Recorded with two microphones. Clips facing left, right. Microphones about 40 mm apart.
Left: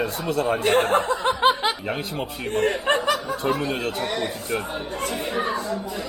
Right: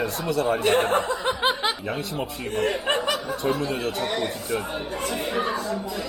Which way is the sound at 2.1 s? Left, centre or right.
Left.